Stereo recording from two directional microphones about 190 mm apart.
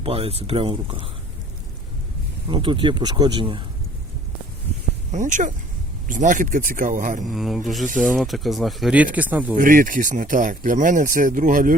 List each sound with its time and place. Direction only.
0.0 s speech: 30° right (ahead or behind)
2.5 s speech: 25° right (ahead or behind)
5.1 s speech: 40° right (ahead or behind)
7.3 s speech: centre (ahead or behind)
9.6 s speech: 45° right (ahead or behind)